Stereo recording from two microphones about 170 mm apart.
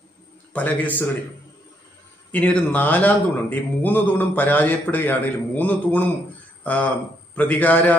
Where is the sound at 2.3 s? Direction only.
10° left (ahead or behind).